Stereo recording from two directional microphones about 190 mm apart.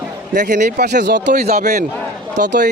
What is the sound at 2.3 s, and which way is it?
Speech, 60° right (ahead or behind).